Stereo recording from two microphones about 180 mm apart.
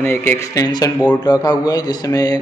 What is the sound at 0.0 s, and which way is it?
A man's voice, 10° left (ahead or behind).